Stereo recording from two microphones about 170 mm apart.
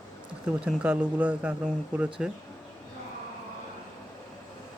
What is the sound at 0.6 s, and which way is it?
Speech, 10° right (ahead or behind).